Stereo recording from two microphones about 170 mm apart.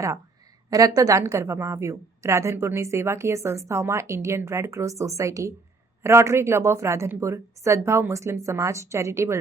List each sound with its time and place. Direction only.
0.7 s a woman's voice: 20° right (ahead or behind)